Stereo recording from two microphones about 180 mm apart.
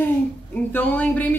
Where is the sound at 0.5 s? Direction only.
10° left (ahead or behind).